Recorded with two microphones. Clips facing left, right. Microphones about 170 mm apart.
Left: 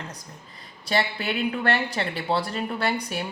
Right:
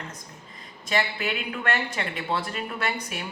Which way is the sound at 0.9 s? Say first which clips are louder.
Left 1 dB; 35° left (ahead or behind).